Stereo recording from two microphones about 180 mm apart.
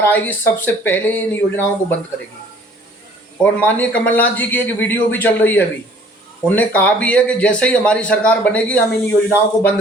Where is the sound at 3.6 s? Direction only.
10° left (ahead or behind).